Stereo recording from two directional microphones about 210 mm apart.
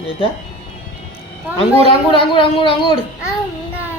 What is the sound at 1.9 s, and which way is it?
A child's voice, 25° left (ahead or behind).